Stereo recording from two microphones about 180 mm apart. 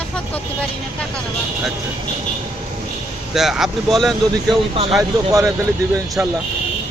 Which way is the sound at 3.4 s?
Centre (ahead or behind).